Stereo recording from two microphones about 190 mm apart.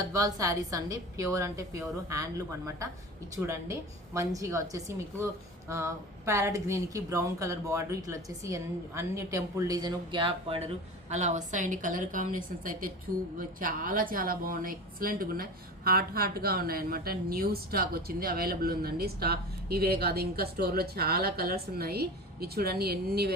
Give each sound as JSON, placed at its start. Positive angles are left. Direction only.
{"t": 0.1, "sound": "a woman's voice", "side_deg": -20}
{"t": 3.4, "sound": "a woman's voice", "side_deg": -15}
{"t": 11.1, "sound": "a woman's voice", "side_deg": -40}